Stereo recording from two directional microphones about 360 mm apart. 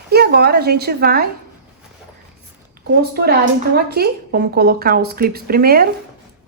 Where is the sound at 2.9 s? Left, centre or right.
Right.